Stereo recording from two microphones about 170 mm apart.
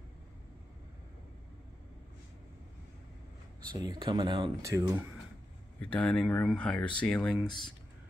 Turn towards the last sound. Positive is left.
turn(degrees=5)  # may be behind; listen again after turning